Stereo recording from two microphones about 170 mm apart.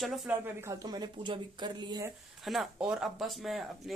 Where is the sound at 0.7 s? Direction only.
25° right (ahead or behind).